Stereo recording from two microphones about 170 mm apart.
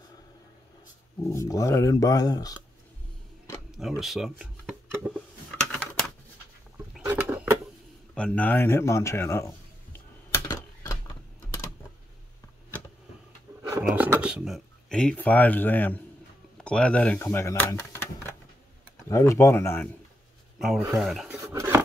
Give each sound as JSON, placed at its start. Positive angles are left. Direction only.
{"t": 1.2, "sound": "speech", "side_deg": 15}
{"t": 3.7, "sound": "speech", "side_deg": -5}
{"t": 5.7, "sound": "typing", "side_deg": 5}
{"t": 6.9, "sound": "a sound", "side_deg": -10}
{"t": 8.1, "sound": "a man's voice", "side_deg": 5}
{"t": 10.3, "sound": "typewriter", "side_deg": 15}
{"t": 13.6, "sound": "a sound", "side_deg": -15}
{"t": 13.8, "sound": "a man's voice", "side_deg": -10}
{"t": 20.5, "sound": "speech", "side_deg": 0}
{"t": 21.5, "sound": "a sound", "side_deg": -15}